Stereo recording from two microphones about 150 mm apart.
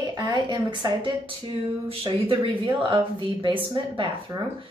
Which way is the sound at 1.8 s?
35° right (ahead or behind).